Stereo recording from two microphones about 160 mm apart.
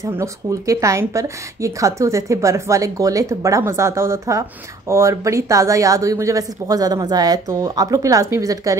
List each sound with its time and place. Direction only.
0.0 s speech: 20° right (ahead or behind)